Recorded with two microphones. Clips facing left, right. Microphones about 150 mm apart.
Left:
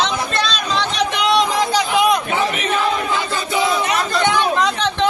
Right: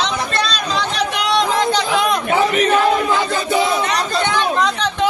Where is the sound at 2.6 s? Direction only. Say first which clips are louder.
Right 5 dB; 45° right (ahead or behind).